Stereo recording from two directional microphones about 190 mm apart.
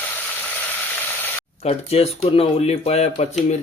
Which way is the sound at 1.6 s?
35° left (ahead or behind).